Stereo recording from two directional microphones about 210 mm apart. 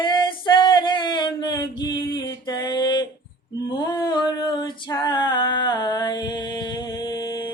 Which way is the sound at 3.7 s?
20° left (ahead or behind).